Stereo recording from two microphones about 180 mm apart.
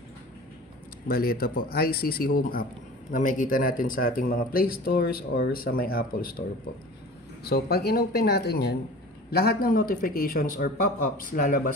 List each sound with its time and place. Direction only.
1.0 s speech: 55° left (ahead or behind)
7.4 s a man's voice: 60° left (ahead or behind)